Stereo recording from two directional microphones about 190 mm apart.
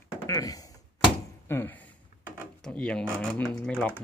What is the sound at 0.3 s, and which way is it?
Thunk, 20° left (ahead or behind).